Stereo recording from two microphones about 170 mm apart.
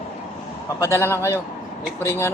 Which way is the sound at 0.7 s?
15° left (ahead or behind).